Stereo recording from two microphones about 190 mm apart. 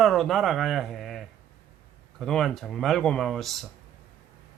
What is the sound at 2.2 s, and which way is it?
A man's voice, centre (ahead or behind).